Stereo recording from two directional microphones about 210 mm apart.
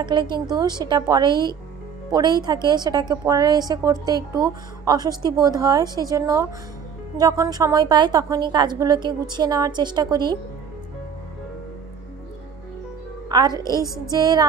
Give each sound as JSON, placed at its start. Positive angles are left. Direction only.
{"t": 0.0, "sound": "a woman's voice", "side_deg": -20}
{"t": 13.3, "sound": "a woman's voice", "side_deg": -20}